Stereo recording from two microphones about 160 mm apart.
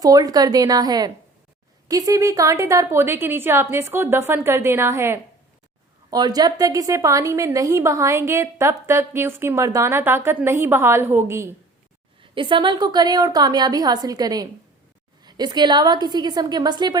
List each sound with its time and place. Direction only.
0.0 s a woman's voice: 25° right (ahead or behind)
12.2 s a woman's voice: 30° right (ahead or behind)